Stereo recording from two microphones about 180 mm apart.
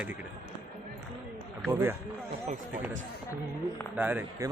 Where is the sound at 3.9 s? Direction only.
10° right (ahead or behind).